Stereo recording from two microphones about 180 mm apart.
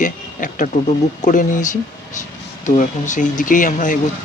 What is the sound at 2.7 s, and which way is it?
Speech, 45° left (ahead or behind).